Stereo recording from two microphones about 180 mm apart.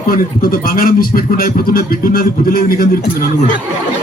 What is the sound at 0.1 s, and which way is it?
A man's voice, 55° left (ahead or behind).